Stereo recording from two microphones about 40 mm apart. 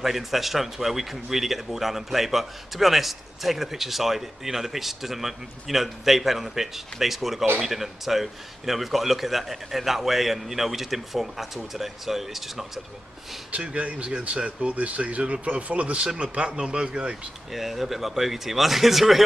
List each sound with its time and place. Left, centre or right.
0.0 s speech: centre
13.7 s speech: right
17.5 s speech: centre